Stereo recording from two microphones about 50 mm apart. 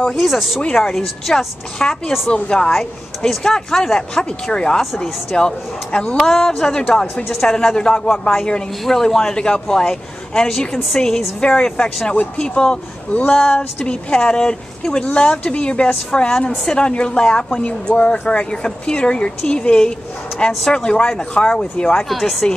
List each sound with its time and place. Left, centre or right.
0.2 s a woman's voice: centre
6.1 s a woman's voice: centre
15.0 s a woman's voice: left
22.1 s speech: centre